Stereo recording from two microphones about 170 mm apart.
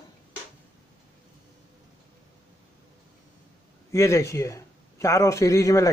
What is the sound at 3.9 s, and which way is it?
Speech, 15° left (ahead or behind).